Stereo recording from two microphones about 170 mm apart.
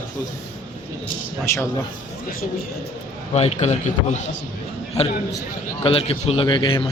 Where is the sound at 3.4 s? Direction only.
40° left (ahead or behind).